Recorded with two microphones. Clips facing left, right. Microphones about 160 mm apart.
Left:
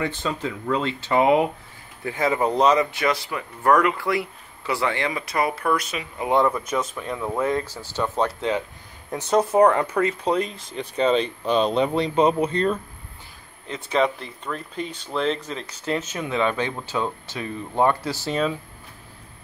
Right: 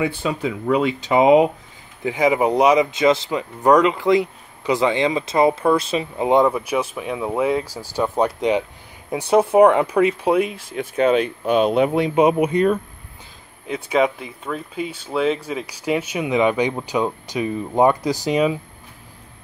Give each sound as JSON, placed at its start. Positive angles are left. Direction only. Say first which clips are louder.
{"t": 0.0, "sound": "speech", "louder": "right 4 dB", "side_deg": -10}